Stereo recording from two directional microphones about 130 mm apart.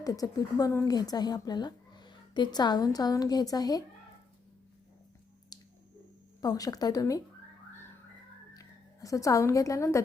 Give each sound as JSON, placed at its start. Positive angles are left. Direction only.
{"t": 0.0, "sound": "a woman's voice", "side_deg": 25}
{"t": 5.5, "sound": "squish", "side_deg": 30}
{"t": 6.4, "sound": "a woman's voice", "side_deg": 30}
{"t": 8.5, "sound": "a woman's voice", "side_deg": 25}